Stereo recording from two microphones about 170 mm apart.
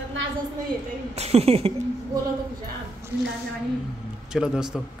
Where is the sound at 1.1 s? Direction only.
40° right (ahead or behind).